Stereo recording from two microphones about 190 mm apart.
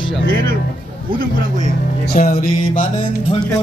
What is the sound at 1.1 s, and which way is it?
Speech, 40° right (ahead or behind).